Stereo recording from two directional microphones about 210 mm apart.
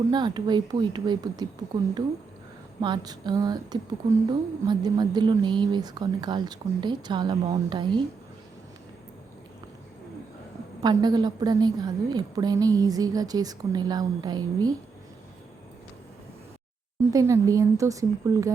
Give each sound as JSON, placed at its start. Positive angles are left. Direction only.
{"t": 0.1, "sound": "a woman's voice", "side_deg": -20}
{"t": 10.8, "sound": "a woman's voice", "side_deg": -20}
{"t": 17.1, "sound": "speech", "side_deg": -15}